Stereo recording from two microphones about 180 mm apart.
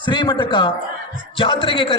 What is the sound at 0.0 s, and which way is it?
A man's voice, 25° left (ahead or behind).